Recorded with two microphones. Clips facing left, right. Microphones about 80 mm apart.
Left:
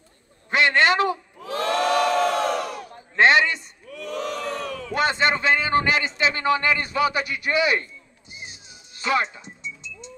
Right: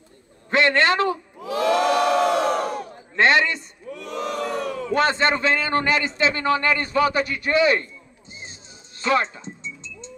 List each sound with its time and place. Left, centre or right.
0.5 s a man's voice: centre
1.4 s battle cry: left
2.4 s battle cry: right
3.2 s a sound: centre
3.8 s battle cry: right
4.9 s a man's voice: centre
8.3 s music: centre